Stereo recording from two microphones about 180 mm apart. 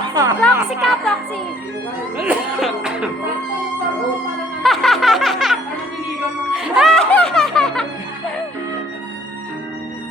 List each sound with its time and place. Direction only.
0.1 s speech: 20° right (ahead or behind)
0.3 s speech: centre (ahead or behind)
2.1 s speech: 5° right (ahead or behind)
4.6 s music: centre (ahead or behind)